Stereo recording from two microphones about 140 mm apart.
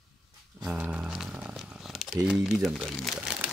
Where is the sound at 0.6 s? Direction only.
10° right (ahead or behind).